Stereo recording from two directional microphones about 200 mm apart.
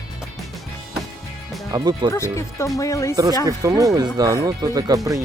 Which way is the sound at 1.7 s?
20° right (ahead or behind).